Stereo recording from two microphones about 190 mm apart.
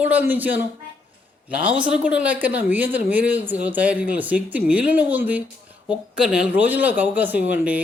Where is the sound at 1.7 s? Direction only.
5° right (ahead or behind).